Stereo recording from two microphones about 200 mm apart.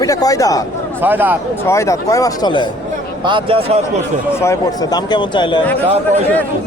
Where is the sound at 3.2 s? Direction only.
25° right (ahead or behind).